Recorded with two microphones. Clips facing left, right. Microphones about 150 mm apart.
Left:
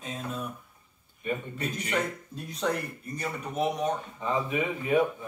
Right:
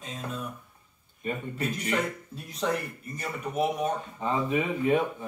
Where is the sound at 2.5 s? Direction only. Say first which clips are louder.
Right 1 dB; centre (ahead or behind).